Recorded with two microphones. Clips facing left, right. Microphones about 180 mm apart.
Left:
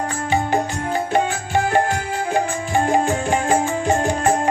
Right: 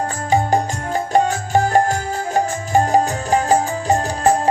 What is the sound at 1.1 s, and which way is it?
Music, 40° right (ahead or behind).